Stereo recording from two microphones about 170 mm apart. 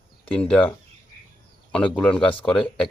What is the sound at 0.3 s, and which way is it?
Speech, 5° left (ahead or behind).